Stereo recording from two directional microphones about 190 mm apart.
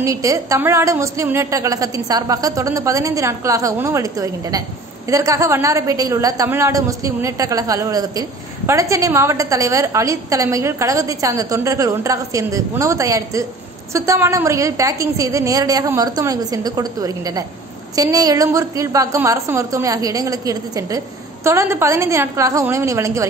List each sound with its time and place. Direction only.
0.0 s a woman's voice: 15° right (ahead or behind)